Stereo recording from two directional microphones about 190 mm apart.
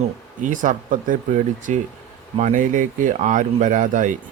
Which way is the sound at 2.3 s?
40° right (ahead or behind).